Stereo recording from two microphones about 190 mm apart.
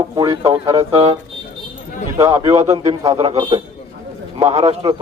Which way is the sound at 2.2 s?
15° right (ahead or behind).